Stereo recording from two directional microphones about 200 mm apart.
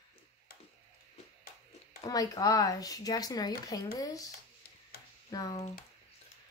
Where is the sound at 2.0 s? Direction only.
20° left (ahead or behind).